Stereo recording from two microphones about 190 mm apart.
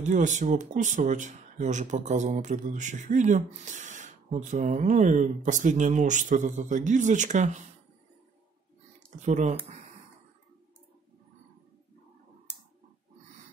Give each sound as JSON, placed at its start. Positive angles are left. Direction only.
{"t": 0.0, "sound": "speech", "side_deg": -40}
{"t": 9.2, "sound": "speech", "side_deg": -35}